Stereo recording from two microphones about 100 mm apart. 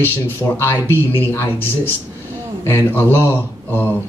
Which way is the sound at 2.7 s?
25° left (ahead or behind).